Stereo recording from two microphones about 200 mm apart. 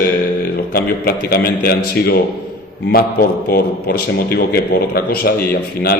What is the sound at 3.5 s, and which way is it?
A man's voice, 50° left (ahead or behind).